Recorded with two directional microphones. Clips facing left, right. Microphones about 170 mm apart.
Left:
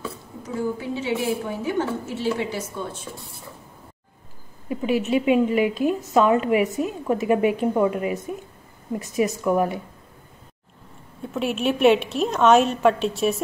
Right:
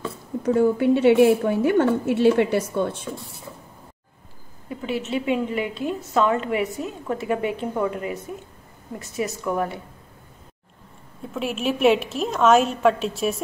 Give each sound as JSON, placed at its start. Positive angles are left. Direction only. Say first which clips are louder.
{"t": 0.4, "sound": "a woman's voice", "louder": "right 9 dB", "side_deg": -65}
{"t": 4.6, "sound": "a woman's voice", "louder": "left 5 dB", "side_deg": 15}
{"t": 11.3, "sound": "a woman's voice", "louder": "left 2 dB", "side_deg": 0}